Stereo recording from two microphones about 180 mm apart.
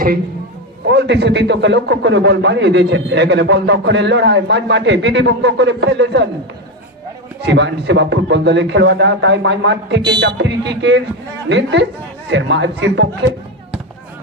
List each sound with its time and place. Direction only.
0.9 s a man's voice: 70° right (ahead or behind)
7.4 s a man's voice: 75° right (ahead or behind); by 13.1 s 90° right